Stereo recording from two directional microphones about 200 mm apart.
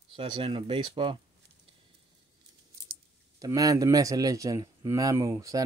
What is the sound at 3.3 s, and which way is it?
Speech, 15° right (ahead or behind).